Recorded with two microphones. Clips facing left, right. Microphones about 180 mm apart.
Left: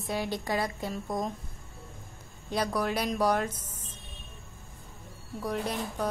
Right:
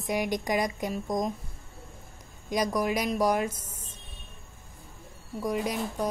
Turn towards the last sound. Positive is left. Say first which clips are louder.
# right 2 dB
turn(degrees=-10)  # may be behind; listen again after turning